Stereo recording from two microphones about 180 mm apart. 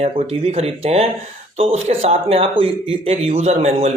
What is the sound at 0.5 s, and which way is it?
Speech, 35° right (ahead or behind).